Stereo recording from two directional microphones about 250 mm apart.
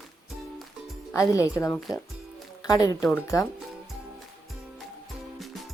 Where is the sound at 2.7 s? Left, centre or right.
Centre.